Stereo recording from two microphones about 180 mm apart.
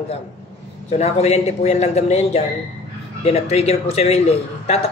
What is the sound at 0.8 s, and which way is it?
A man's voice, 35° left (ahead or behind).